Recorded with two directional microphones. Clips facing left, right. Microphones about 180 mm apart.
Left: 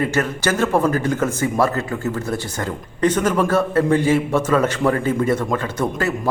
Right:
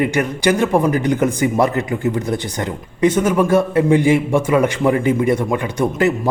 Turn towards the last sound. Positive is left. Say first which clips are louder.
# right 4 dB
turn(degrees=-20)  # may be behind; listen again after turning